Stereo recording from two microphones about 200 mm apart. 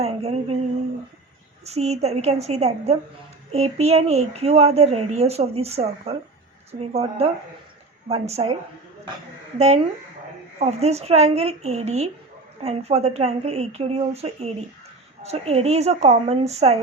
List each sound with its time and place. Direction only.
0.0 s a sound: 30° right (ahead or behind)
1.6 s a woman's voice: 30° right (ahead or behind)
9.6 s a woman's voice: 35° right (ahead or behind)